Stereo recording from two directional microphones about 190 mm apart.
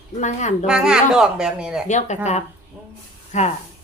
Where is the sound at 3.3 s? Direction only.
35° left (ahead or behind).